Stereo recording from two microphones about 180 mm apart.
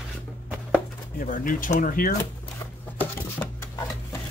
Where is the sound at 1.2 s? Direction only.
50° left (ahead or behind).